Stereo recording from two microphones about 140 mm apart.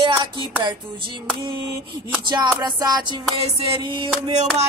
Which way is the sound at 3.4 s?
35° right (ahead or behind).